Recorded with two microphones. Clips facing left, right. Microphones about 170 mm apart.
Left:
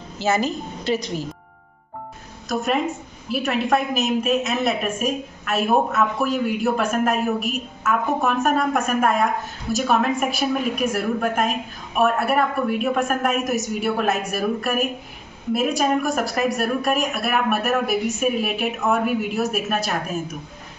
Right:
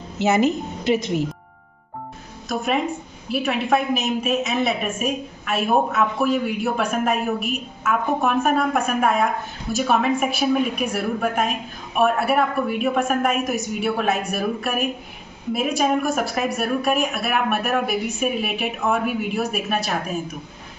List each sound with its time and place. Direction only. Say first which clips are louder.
0.2 s a woman's voice: right 3 dB; 20° right (ahead or behind)
2.4 s a woman's voice: even; centre (ahead or behind)